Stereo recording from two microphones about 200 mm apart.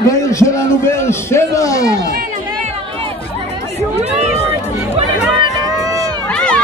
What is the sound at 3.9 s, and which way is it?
Speech, 35° right (ahead or behind).